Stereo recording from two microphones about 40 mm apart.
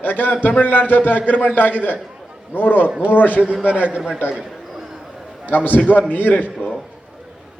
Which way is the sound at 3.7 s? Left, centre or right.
Right.